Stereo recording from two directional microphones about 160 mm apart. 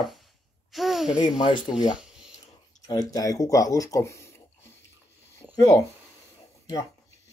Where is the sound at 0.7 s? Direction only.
Centre (ahead or behind).